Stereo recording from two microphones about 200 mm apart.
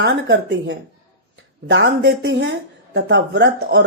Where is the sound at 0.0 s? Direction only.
60° right (ahead or behind).